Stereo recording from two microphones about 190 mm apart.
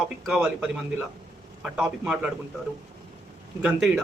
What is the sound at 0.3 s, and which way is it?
A man's voice, centre (ahead or behind).